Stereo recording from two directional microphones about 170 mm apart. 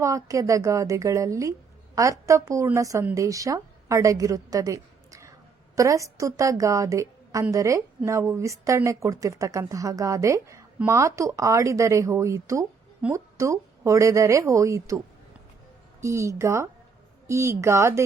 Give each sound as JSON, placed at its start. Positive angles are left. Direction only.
{"t": 0.0, "sound": "a woman's voice", "side_deg": -20}